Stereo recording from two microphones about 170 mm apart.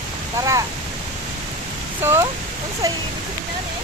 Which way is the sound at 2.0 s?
15° right (ahead or behind).